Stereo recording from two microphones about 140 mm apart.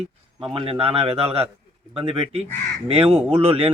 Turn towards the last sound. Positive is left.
turn(degrees=-45)  # may be behind; listen again after turning